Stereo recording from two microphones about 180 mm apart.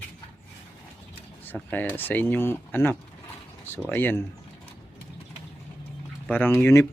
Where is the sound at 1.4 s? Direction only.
10° left (ahead or behind).